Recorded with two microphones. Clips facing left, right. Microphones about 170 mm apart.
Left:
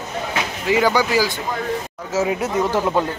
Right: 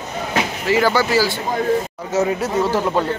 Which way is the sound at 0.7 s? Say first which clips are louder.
Right 1 dB; 15° left (ahead or behind).